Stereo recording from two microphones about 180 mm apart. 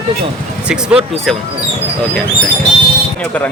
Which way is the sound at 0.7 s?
5° right (ahead or behind).